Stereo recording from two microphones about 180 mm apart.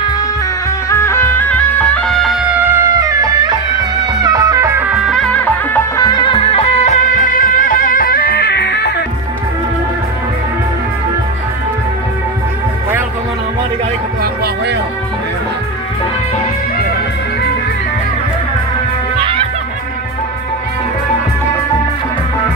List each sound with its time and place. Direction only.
0.7 s music: 15° left (ahead or behind); by 2.5 s centre (ahead or behind)
2.7 s music: 15° right (ahead or behind); by 9.0 s 65° left (ahead or behind)
14.2 s music: 60° right (ahead or behind)